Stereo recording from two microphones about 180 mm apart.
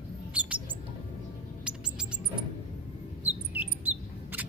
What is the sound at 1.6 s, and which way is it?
Bird, 5° right (ahead or behind).